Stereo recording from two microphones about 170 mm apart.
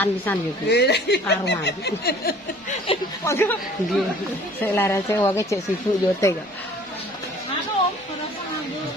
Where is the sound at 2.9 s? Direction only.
35° left (ahead or behind).